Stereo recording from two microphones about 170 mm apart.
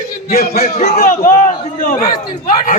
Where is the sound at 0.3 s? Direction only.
60° left (ahead or behind).